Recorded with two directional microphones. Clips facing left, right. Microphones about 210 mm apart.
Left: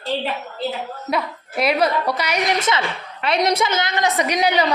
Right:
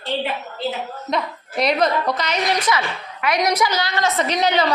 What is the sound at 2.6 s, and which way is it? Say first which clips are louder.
A woman's voice: even; 25° left (ahead or behind).